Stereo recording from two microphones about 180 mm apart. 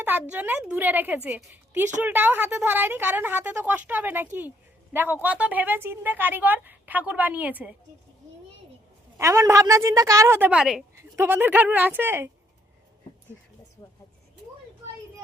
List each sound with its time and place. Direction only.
0.0 s a woman's voice: 10° right (ahead or behind)
9.1 s a woman's voice: 15° right (ahead or behind)